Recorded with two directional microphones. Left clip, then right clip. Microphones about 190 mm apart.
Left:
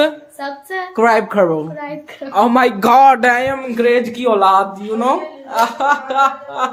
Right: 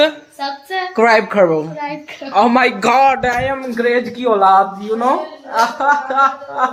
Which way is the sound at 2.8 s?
55° left (ahead or behind).